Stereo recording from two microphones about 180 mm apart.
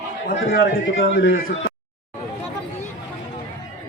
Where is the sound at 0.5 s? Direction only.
70° left (ahead or behind).